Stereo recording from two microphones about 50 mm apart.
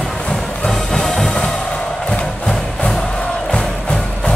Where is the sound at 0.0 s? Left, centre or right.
Centre.